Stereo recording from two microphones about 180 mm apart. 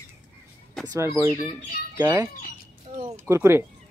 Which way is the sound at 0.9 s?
15° right (ahead or behind).